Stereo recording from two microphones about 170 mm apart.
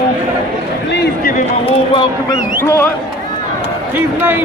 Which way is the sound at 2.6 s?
15° left (ahead or behind).